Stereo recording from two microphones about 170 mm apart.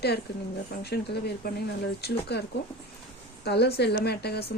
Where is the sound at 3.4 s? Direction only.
75° left (ahead or behind).